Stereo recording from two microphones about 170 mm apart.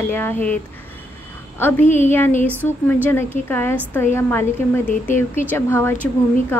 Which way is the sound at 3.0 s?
10° left (ahead or behind).